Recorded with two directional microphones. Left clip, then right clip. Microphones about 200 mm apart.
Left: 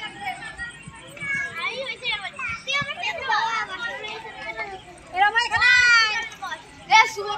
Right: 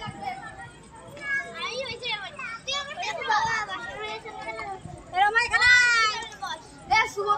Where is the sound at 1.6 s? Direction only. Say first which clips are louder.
Left 4 dB; 20° left (ahead or behind).